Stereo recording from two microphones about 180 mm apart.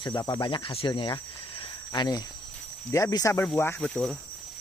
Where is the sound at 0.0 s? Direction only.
25° left (ahead or behind).